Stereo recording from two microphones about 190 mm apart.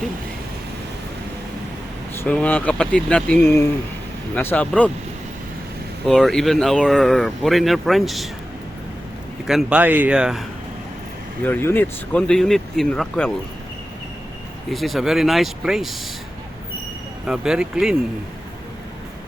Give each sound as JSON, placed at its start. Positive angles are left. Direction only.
{"t": 2.1, "sound": "speech", "side_deg": 5}
{"t": 6.1, "sound": "speech", "side_deg": 0}
{"t": 9.5, "sound": "speech", "side_deg": -5}
{"t": 11.4, "sound": "speech", "side_deg": 10}
{"t": 14.7, "sound": "speech", "side_deg": 0}
{"t": 17.2, "sound": "speech", "side_deg": -5}